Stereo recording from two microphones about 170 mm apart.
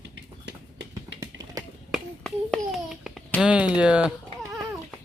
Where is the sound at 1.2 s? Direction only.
20° right (ahead or behind).